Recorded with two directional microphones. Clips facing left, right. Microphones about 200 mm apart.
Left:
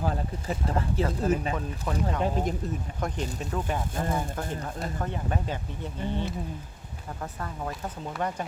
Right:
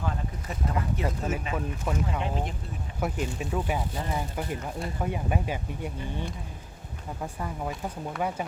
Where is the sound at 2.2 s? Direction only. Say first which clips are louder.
Left 4 dB; 40° left (ahead or behind).